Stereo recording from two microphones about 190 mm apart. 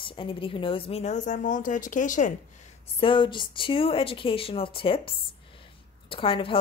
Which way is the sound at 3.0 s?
25° left (ahead or behind).